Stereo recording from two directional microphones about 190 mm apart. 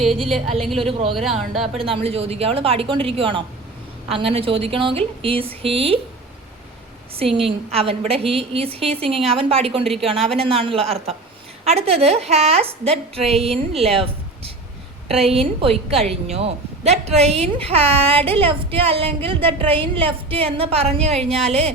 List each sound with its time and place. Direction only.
0.0 s speech: centre (ahead or behind)
1.8 s a woman's voice: 30° right (ahead or behind)
7.2 s a woman's voice: 30° right (ahead or behind)